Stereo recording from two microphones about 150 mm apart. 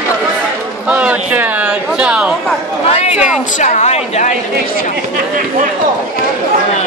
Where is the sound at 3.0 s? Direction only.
45° left (ahead or behind).